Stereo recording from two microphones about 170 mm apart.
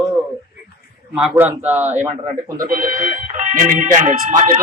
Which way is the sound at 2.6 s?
55° right (ahead or behind).